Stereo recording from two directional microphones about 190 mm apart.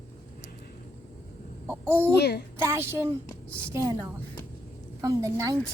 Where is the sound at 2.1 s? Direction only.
60° left (ahead or behind).